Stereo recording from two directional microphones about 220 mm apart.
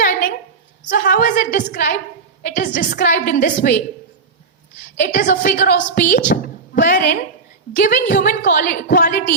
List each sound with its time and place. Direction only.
0.0 s a sound: 40° left (ahead or behind)
0.9 s a woman's voice: 40° left (ahead or behind)
4.9 s a woman's voice: 40° left (ahead or behind)